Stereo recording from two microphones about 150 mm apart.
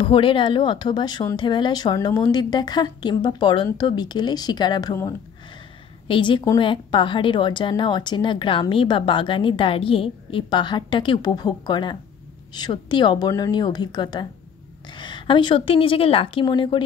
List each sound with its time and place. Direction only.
0.0 s a woman's voice: 35° left (ahead or behind)